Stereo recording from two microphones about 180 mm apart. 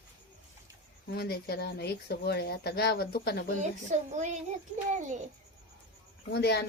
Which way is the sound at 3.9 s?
40° right (ahead or behind).